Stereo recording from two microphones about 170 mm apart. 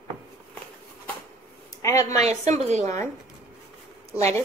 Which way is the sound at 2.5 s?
40° right (ahead or behind).